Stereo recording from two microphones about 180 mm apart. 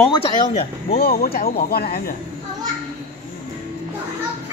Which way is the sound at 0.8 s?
60° left (ahead or behind).